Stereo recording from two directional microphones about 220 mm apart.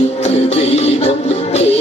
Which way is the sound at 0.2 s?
30° left (ahead or behind).